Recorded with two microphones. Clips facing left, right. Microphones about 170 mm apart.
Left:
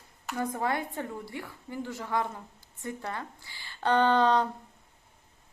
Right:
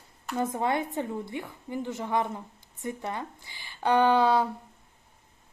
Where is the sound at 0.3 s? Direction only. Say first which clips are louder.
Right 3 dB; 20° right (ahead or behind).